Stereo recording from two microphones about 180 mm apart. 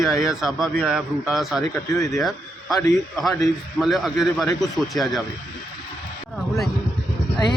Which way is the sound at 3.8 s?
Centre (ahead or behind).